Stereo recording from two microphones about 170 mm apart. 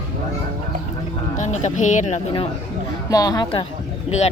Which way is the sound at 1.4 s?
45° left (ahead or behind).